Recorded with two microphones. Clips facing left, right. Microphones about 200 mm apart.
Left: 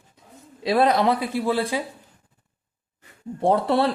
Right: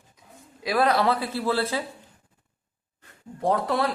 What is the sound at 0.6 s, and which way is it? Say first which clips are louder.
Speech: left 3 dB; 20° left (ahead or behind).